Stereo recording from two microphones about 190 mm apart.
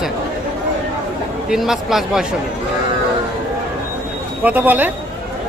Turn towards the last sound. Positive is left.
turn(degrees=-10)  # may be behind; listen again after turning